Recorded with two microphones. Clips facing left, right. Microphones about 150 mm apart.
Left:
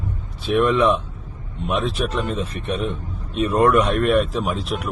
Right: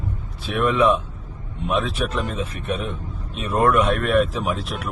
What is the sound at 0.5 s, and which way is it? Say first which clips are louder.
Speech: left 1 dB; 10° right (ahead or behind).